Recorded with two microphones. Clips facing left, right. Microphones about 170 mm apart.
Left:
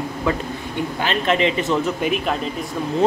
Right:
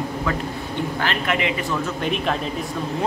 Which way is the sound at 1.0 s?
25° left (ahead or behind).